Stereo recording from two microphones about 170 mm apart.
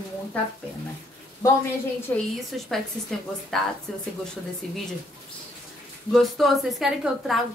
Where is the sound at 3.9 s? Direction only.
Centre (ahead or behind).